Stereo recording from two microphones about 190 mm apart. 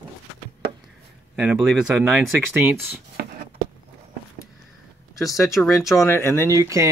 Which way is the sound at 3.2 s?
55° right (ahead or behind).